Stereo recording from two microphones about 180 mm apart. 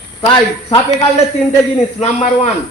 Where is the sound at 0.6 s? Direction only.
25° left (ahead or behind).